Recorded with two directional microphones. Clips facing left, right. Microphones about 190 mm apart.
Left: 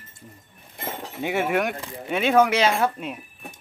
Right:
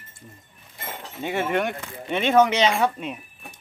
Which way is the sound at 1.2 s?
10° left (ahead or behind).